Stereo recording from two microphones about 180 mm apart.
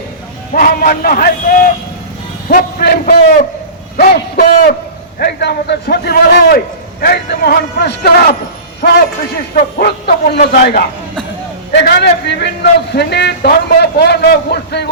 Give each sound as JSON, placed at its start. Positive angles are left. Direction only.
{"t": 0.5, "sound": "a man's voice", "side_deg": 55}